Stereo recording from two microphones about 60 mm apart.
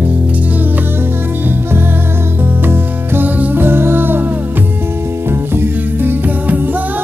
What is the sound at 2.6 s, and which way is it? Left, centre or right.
Music, right.